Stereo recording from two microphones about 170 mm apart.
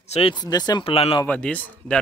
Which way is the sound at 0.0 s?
35° left (ahead or behind).